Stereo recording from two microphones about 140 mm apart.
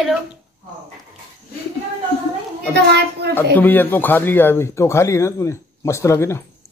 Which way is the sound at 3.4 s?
15° left (ahead or behind).